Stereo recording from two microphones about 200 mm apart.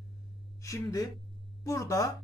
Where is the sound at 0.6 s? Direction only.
15° left (ahead or behind).